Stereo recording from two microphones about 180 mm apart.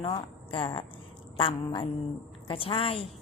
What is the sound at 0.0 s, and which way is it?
A woman's voice, 30° left (ahead or behind).